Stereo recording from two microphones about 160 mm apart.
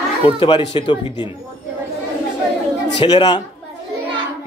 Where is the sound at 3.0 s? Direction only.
30° left (ahead or behind).